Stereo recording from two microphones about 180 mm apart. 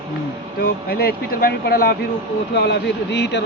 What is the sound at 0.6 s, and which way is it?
Speech, 60° left (ahead or behind).